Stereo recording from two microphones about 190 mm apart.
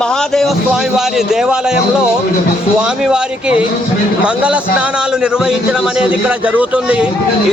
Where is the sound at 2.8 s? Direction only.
5° right (ahead or behind).